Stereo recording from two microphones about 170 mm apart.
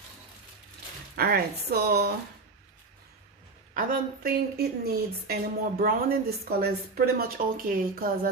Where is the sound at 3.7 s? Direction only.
55° right (ahead or behind).